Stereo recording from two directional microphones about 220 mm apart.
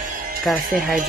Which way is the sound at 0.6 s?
40° right (ahead or behind).